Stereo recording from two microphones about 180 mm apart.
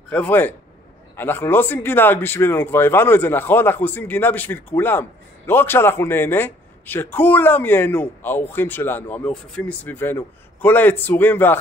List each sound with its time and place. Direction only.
0.1 s a man's voice: 10° left (ahead or behind)